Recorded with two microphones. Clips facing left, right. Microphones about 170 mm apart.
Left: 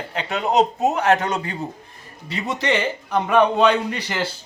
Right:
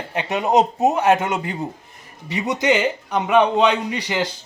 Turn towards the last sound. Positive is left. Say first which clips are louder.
# right 2 dB
turn(degrees=-15)  # may be behind; listen again after turning